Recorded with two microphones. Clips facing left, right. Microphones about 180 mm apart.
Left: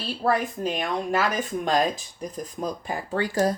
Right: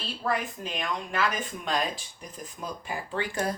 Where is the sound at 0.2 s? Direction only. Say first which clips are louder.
Left 6 dB; 40° left (ahead or behind).